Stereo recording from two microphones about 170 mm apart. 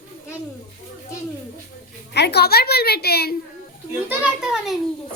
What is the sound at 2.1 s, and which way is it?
A woman's voice, 75° left (ahead or behind).